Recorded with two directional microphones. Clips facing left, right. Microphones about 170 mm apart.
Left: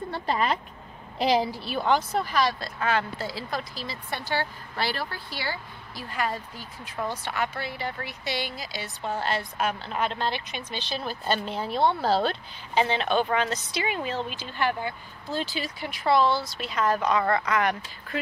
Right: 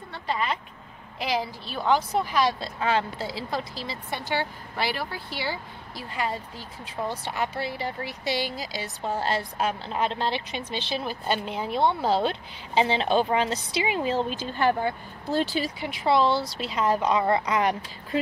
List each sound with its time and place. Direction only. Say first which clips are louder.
0.1 s speech: left 2 dB; 45° left (ahead or behind)
1.2 s a woman's voice: left 5 dB; 30° left (ahead or behind)
1.6 s a woman's voice: left 3 dB; 5° left (ahead or behind)
1.9 s speech: right 2 dB; 10° right (ahead or behind); by 14.1 s 30° right (ahead or behind)
14.1 s speech: right 5 dB; 40° right (ahead or behind)
15.8 s speech: even; 20° right (ahead or behind)